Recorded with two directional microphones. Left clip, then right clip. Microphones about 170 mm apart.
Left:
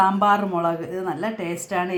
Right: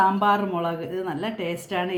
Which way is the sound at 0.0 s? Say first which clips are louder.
Left 2 dB; 30° left (ahead or behind).